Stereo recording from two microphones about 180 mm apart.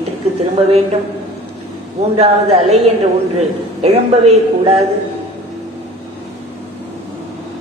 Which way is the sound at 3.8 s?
35° right (ahead or behind).